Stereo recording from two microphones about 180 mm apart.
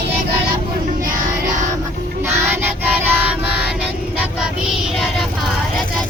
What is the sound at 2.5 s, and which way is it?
Child singing, 10° right (ahead or behind).